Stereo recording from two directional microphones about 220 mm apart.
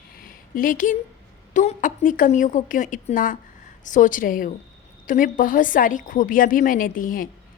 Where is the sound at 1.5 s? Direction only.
35° left (ahead or behind).